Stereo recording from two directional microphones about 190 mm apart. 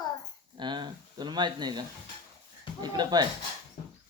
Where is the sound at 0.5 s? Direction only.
25° right (ahead or behind).